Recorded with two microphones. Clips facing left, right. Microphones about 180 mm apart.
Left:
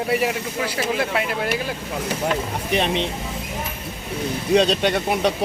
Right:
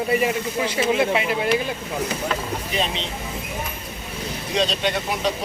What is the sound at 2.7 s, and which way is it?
Speech, 60° left (ahead or behind).